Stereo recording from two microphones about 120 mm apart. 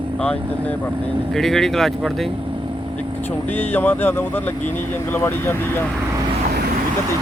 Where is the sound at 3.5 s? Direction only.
15° left (ahead or behind).